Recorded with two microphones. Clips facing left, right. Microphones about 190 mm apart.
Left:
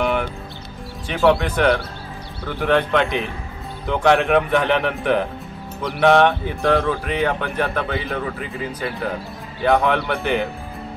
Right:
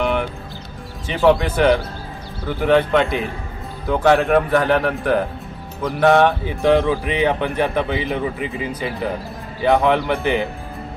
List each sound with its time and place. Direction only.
0.0 s music: centre (ahead or behind)
1.2 s speech: 10° right (ahead or behind)
6.6 s speech: 15° right (ahead or behind)
8.4 s speech: centre (ahead or behind)